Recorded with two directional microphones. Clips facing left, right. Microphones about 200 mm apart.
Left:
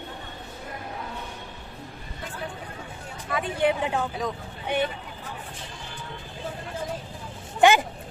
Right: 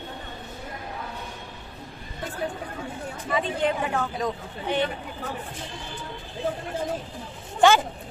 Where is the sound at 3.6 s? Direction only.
15° left (ahead or behind).